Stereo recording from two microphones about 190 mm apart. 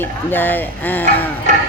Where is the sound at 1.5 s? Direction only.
40° right (ahead or behind).